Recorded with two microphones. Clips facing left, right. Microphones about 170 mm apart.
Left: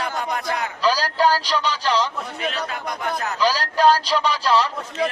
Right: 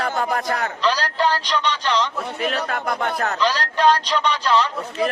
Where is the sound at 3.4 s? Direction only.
10° left (ahead or behind).